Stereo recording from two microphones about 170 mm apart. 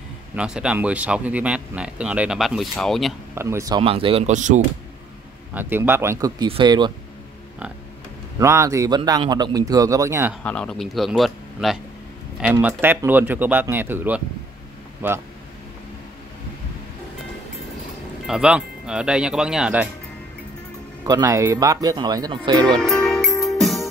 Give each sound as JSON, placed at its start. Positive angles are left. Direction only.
{"t": 0.4, "sound": "speech", "side_deg": -5}
{"t": 3.3, "sound": "speech", "side_deg": -15}
{"t": 3.8, "sound": "speech", "side_deg": -35}
{"t": 5.5, "sound": "a man's voice", "side_deg": -10}
{"t": 8.4, "sound": "a man's voice", "side_deg": -15}
{"t": 10.4, "sound": "speech", "side_deg": 5}
{"t": 12.5, "sound": "speech", "side_deg": -10}
{"t": 18.2, "sound": "speech", "side_deg": -5}
{"t": 21.0, "sound": "a man's voice", "side_deg": -20}
{"t": 22.7, "sound": "music", "side_deg": 5}